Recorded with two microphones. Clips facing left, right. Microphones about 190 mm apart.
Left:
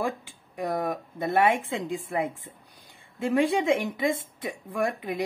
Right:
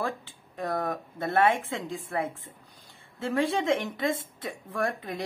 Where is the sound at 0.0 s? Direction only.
15° left (ahead or behind).